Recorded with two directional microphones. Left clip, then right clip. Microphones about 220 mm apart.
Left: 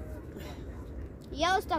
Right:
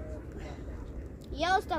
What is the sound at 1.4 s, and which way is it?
Speech, 25° left (ahead or behind).